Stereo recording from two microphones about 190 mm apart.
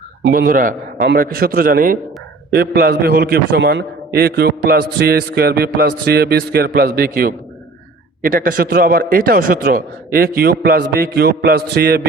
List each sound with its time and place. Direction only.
0.3 s a man's voice: 50° right (ahead or behind)